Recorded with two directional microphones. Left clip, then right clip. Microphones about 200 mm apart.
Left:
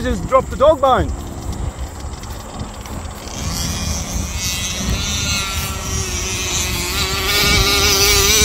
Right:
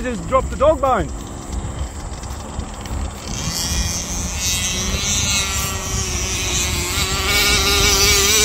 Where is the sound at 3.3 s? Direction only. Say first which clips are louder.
Right 1 dB; 35° right (ahead or behind).